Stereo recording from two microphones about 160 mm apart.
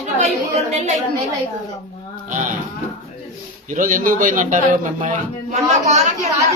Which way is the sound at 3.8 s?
55° right (ahead or behind).